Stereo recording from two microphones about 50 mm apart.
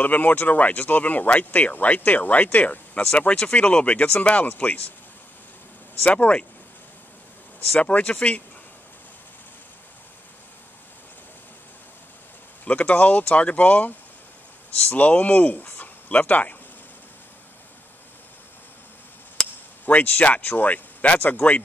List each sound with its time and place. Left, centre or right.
0.0 s speech: left
6.0 s speech: left
7.8 s speech: left
12.6 s speech: left
19.4 s chop: centre
19.9 s speech: left